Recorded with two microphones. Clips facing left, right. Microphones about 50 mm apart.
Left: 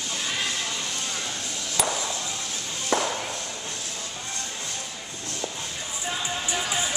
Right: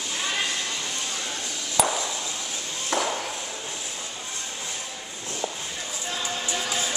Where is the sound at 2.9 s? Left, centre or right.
Centre.